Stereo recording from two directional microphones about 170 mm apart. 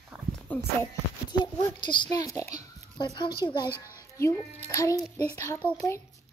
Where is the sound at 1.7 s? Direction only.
25° left (ahead or behind).